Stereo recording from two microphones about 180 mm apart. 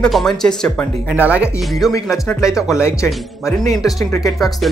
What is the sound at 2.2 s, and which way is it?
Speech, 15° left (ahead or behind).